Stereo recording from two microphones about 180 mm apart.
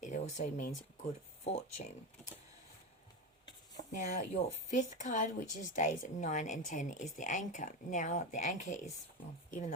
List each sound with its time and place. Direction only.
0.0 s a sound: 40° left (ahead or behind)
1.5 s speech: 35° left (ahead or behind)
3.9 s speech: 40° left (ahead or behind)